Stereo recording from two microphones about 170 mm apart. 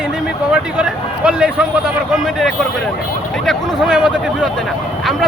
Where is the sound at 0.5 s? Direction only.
5° right (ahead or behind).